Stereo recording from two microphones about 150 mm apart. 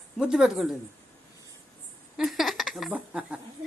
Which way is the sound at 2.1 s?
Centre (ahead or behind).